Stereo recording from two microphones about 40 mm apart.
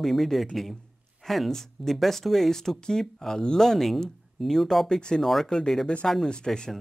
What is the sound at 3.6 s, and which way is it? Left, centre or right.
Speech, centre.